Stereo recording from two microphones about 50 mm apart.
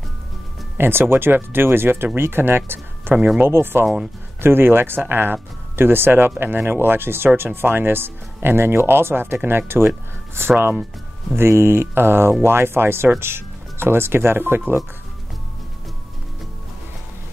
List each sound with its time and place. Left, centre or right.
0.7 s speech: right